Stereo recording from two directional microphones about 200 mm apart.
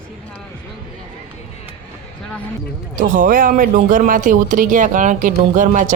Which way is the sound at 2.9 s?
40° right (ahead or behind).